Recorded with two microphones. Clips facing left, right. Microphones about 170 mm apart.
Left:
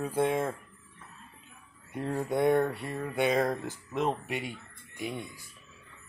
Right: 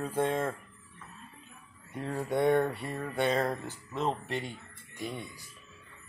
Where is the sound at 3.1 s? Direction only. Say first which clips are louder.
Left 2 dB; 10° left (ahead or behind).